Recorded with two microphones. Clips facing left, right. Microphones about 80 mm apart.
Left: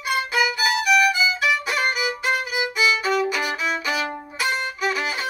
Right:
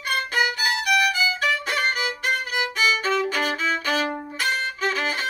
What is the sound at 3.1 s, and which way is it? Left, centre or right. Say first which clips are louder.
Violin: left 1 dB; centre.